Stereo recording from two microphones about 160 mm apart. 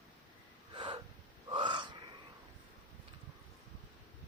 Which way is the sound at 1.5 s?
30° right (ahead or behind).